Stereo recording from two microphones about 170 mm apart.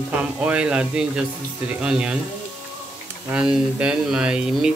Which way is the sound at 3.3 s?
5° right (ahead or behind).